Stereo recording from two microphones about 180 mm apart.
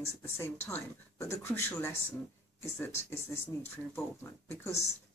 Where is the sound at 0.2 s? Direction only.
15° left (ahead or behind).